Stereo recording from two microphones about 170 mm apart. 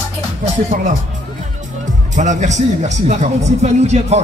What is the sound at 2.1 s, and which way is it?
Speech, 45° right (ahead or behind).